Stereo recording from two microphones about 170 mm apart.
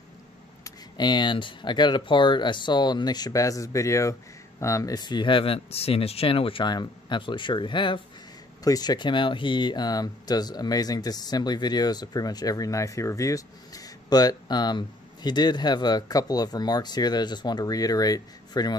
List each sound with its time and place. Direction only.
0.7 s speech: 25° left (ahead or behind)